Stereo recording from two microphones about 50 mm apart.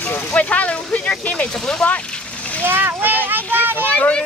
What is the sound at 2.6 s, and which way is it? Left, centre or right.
A child's voice, right.